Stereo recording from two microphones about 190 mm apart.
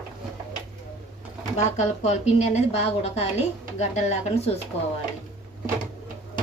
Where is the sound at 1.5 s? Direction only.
35° left (ahead or behind).